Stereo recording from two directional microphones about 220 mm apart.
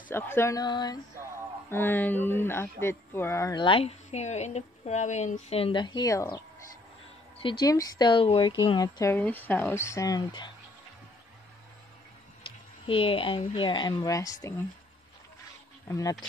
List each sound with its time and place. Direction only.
0.1 s speech: 10° left (ahead or behind)
7.4 s speech: 20° left (ahead or behind)
12.4 s speech: 25° left (ahead or behind)
15.9 s speech: 15° left (ahead or behind)